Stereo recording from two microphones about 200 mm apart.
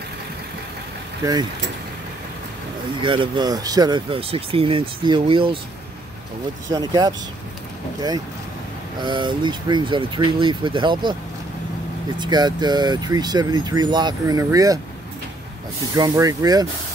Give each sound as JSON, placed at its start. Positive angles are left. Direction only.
{"t": 3.0, "sound": "speech", "side_deg": -25}
{"t": 6.7, "sound": "speech", "side_deg": -20}
{"t": 9.0, "sound": "speech", "side_deg": -25}
{"t": 12.2, "sound": "speech", "side_deg": -20}
{"t": 15.9, "sound": "speech", "side_deg": -15}